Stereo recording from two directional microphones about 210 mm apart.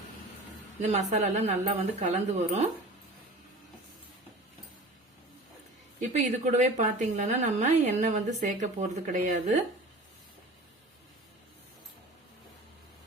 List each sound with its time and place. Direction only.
0.8 s a woman's voice: 30° right (ahead or behind)
6.0 s a woman's voice: 35° right (ahead or behind)